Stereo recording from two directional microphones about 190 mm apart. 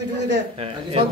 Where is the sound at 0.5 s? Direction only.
30° right (ahead or behind).